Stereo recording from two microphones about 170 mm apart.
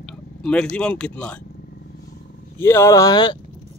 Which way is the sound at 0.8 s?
5° left (ahead or behind).